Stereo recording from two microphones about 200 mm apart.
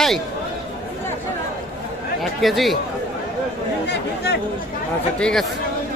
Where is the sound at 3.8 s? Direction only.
55° left (ahead or behind).